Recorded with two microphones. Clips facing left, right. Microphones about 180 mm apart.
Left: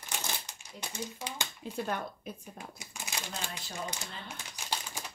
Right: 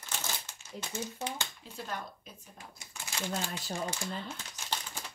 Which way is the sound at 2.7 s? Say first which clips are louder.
Right 5 dB; 15° left (ahead or behind).